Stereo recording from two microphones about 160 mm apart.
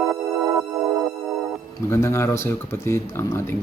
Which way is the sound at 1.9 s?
15° left (ahead or behind).